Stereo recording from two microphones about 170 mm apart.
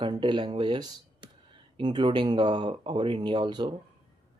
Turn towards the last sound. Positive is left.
turn(degrees=-25)  # may be behind; listen again after turning